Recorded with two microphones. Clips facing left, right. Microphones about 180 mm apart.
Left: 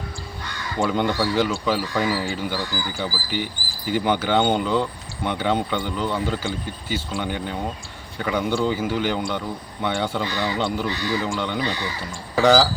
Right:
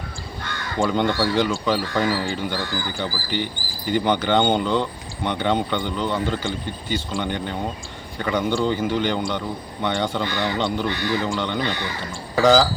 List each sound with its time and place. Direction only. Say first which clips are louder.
0.8 s speech: right 1 dB; 5° left (ahead or behind)
10.8 s speech: right 1 dB; 55° right (ahead or behind)
11.3 s speech: right 1 dB; 5° left (ahead or behind)